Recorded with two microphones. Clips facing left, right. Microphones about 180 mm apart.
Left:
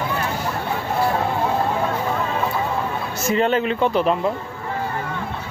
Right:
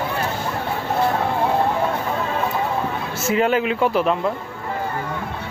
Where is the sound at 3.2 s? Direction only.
5° right (ahead or behind).